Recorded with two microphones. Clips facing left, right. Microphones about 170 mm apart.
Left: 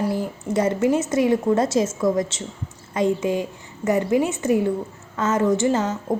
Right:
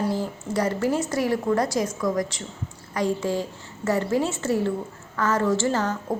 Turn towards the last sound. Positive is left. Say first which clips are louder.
# left 3 dB
turn(degrees=20)  # may be behind; listen again after turning